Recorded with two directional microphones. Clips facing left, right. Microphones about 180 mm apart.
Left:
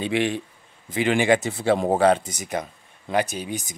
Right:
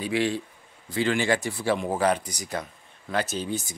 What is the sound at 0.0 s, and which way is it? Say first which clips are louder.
Speech: left 2 dB; 20° left (ahead or behind).